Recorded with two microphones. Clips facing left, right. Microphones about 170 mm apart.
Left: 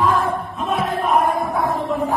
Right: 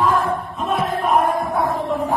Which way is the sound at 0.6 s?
Centre (ahead or behind).